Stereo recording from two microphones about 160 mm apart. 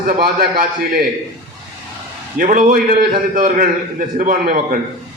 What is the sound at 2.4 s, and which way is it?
A man's voice, 55° right (ahead or behind).